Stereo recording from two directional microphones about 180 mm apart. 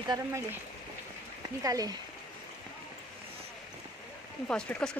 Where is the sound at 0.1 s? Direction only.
15° right (ahead or behind).